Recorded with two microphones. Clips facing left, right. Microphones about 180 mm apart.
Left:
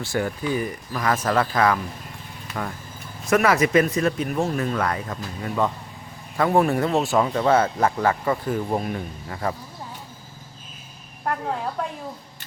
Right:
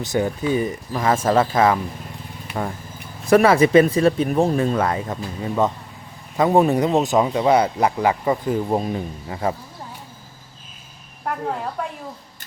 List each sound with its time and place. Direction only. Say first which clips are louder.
0.0 s speech: right 4 dB; 20° right (ahead or behind)